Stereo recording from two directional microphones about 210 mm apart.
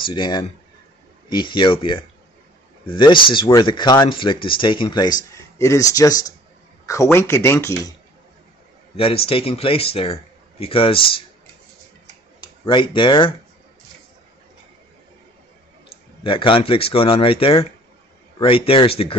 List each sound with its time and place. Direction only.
0.0 s speech: 20° left (ahead or behind)
8.9 s speech: 25° left (ahead or behind)
12.4 s speech: 25° left (ahead or behind)
16.3 s speech: 25° left (ahead or behind)